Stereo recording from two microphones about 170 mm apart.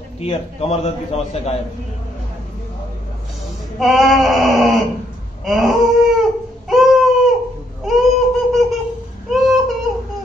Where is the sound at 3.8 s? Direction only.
Centre (ahead or behind).